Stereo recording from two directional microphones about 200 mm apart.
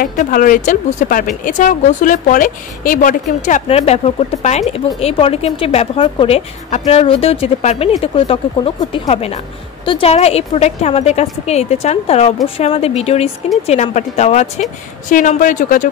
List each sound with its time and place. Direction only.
0.0 s speech: 40° left (ahead or behind)